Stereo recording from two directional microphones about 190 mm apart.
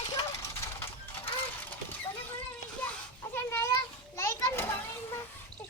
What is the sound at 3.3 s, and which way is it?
A child's voice, 10° left (ahead or behind).